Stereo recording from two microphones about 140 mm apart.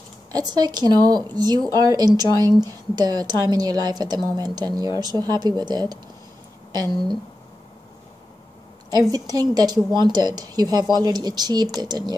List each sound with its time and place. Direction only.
0.3 s a woman's voice: 30° right (ahead or behind)
9.1 s a woman's voice: 25° right (ahead or behind)